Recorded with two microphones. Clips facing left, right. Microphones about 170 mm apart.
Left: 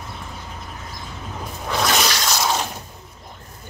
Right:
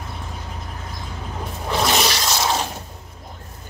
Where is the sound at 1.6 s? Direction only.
Centre (ahead or behind).